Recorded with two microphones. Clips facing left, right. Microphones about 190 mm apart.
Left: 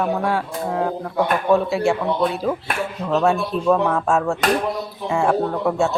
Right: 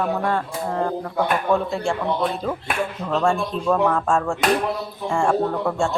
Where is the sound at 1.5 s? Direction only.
5° left (ahead or behind).